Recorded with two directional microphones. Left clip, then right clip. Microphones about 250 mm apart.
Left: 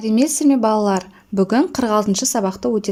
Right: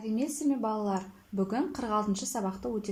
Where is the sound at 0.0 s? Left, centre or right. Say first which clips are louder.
Left 15 dB; left.